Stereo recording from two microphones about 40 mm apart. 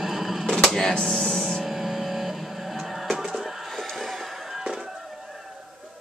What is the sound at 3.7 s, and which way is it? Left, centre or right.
Fireworks, centre.